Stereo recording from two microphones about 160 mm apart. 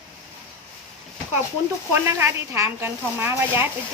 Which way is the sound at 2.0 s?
15° right (ahead or behind).